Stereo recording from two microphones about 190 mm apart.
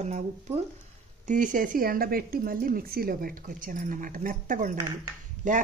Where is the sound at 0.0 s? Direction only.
35° right (ahead or behind).